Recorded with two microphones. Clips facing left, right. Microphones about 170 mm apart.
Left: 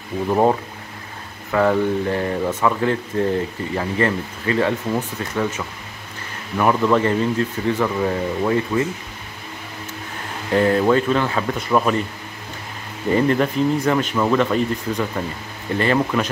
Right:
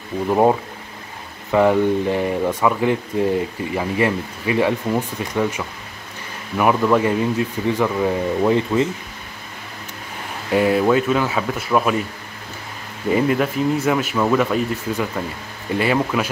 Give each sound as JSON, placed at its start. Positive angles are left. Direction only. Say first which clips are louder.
{"t": 0.3, "sound": "speech", "louder": "right 1 dB", "side_deg": -5}
{"t": 8.4, "sound": "speech", "louder": "right 3 dB", "side_deg": -20}
{"t": 10.5, "sound": "speech", "louder": "even", "side_deg": -10}
{"t": 13.1, "sound": "speech", "louder": "even", "side_deg": -5}